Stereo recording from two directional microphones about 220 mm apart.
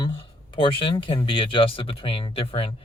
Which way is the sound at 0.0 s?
20° left (ahead or behind).